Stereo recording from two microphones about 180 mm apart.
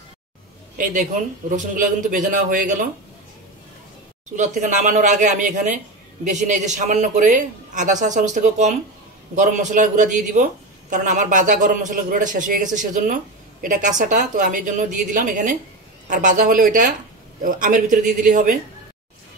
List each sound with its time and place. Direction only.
1.8 s a man's voice: 50° right (ahead or behind)
4.4 s a man's voice: 45° right (ahead or behind)